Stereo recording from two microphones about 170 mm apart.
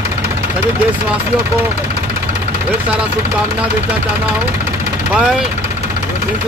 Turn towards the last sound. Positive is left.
turn(degrees=-5)  # may be behind; listen again after turning